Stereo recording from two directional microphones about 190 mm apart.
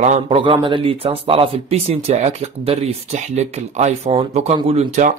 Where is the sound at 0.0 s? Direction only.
30° right (ahead or behind).